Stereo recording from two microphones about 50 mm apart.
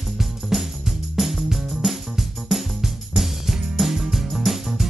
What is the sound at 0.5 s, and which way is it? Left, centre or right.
Music, centre.